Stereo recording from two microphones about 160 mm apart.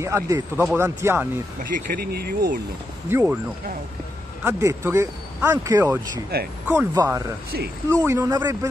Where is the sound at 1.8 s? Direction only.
75° right (ahead or behind).